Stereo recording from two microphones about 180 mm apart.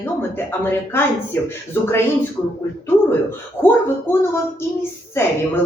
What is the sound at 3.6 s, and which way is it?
A woman's voice, 10° left (ahead or behind).